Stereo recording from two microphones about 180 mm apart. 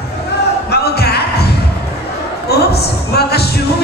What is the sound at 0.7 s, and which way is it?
Music, 65° left (ahead or behind).